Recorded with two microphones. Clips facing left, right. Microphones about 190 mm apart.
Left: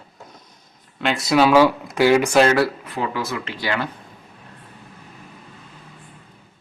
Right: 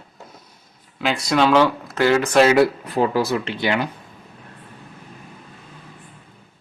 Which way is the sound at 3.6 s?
20° right (ahead or behind).